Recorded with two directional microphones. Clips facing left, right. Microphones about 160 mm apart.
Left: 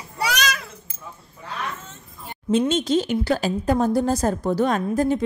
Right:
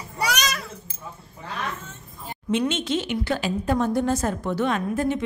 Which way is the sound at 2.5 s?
35° left (ahead or behind).